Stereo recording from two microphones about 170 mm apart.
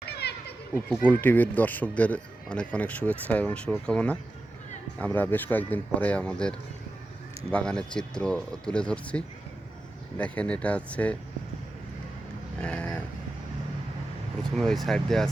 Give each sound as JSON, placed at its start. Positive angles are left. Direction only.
{"t": 0.0, "sound": "children playing", "side_deg": 75}
{"t": 0.7, "sound": "speech", "side_deg": 10}
{"t": 12.6, "sound": "speech", "side_deg": 5}
{"t": 14.5, "sound": "speech", "side_deg": 0}